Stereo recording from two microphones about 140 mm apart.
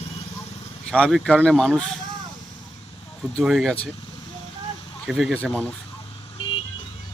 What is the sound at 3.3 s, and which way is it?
Speech, centre (ahead or behind).